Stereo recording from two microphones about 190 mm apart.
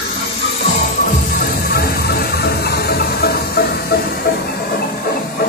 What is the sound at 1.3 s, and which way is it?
Music, 55° left (ahead or behind).